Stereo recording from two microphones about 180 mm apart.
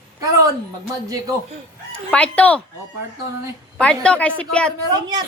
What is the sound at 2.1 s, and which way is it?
Speech, 5° left (ahead or behind).